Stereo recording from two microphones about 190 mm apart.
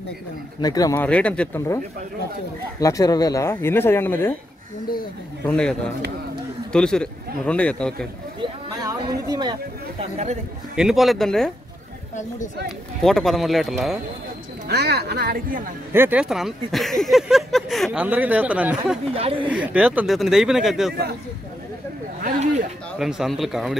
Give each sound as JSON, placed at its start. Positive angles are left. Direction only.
{"t": 0.6, "sound": "speech", "side_deg": 20}
{"t": 1.0, "sound": "speech", "side_deg": 5}
{"t": 2.8, "sound": "speech", "side_deg": 20}
{"t": 5.5, "sound": "speech", "side_deg": 5}
{"t": 8.4, "sound": "chatter", "side_deg": -20}
{"t": 10.8, "sound": "speech", "side_deg": 0}
{"t": 13.0, "sound": "speech", "side_deg": 0}
{"t": 14.7, "sound": "speech", "side_deg": -60}
{"t": 15.9, "sound": "speech", "side_deg": -10}
{"t": 22.2, "sound": "speech", "side_deg": -45}
{"t": 22.9, "sound": "speech", "side_deg": 0}